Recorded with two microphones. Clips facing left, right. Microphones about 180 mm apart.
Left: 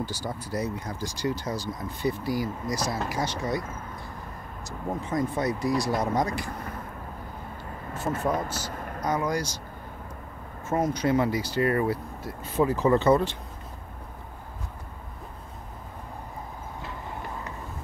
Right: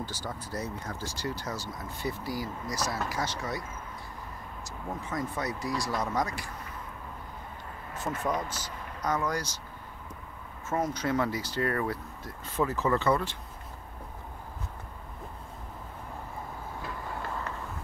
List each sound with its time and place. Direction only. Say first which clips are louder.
0.0 s speech: left 5 dB; 10° left (ahead or behind)
4.6 s speech: left 6 dB; 20° left (ahead or behind)
8.3 s speech: left 4 dB; 5° left (ahead or behind)
10.8 s speech: left 5 dB; 15° left (ahead or behind)
16.8 s vehicle: even; 15° left (ahead or behind)